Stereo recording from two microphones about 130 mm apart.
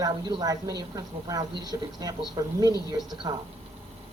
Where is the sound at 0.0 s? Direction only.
35° right (ahead or behind).